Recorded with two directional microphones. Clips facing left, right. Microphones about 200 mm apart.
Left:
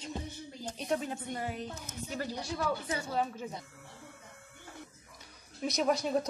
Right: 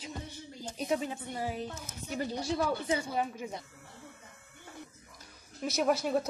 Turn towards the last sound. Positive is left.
turn(degrees=-5)  # may be behind; listen again after turning